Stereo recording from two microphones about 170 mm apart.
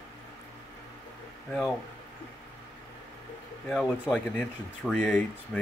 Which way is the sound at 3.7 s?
5° left (ahead or behind).